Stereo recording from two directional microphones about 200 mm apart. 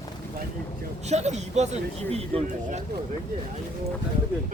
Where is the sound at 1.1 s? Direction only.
35° right (ahead or behind).